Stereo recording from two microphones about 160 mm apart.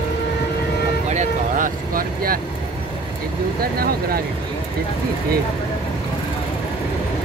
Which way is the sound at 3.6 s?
70° right (ahead or behind).